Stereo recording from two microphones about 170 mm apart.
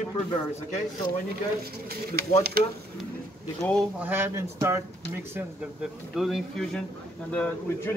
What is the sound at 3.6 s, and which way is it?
Speech, 10° left (ahead or behind).